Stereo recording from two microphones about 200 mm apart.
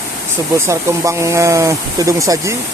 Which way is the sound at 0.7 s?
15° right (ahead or behind).